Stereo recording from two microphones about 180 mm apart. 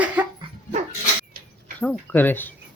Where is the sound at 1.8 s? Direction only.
10° left (ahead or behind).